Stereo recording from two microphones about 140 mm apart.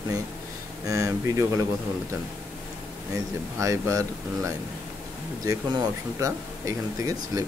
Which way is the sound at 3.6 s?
20° right (ahead or behind).